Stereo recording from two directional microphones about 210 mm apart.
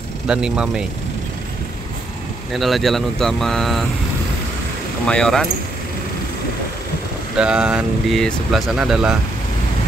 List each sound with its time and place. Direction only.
0.3 s speech: 5° right (ahead or behind)
2.5 s speech: centre (ahead or behind)
5.0 s speech: 5° left (ahead or behind)
7.3 s speech: 5° right (ahead or behind)